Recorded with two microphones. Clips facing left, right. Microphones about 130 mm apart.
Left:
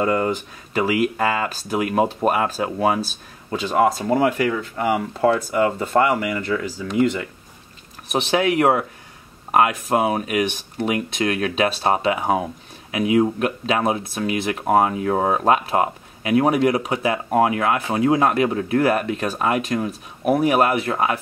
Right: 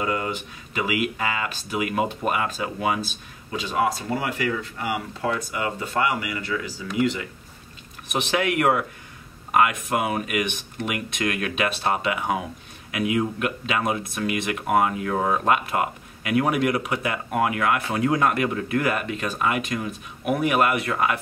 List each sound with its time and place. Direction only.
0.0 s speech: 40° left (ahead or behind)
8.1 s speech: 30° left (ahead or behind)